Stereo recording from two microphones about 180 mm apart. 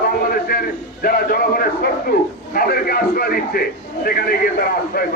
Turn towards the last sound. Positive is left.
turn(degrees=55)  # may be behind; listen again after turning